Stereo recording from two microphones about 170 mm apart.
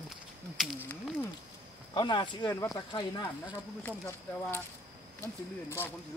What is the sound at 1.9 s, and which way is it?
Speech, 30° left (ahead or behind).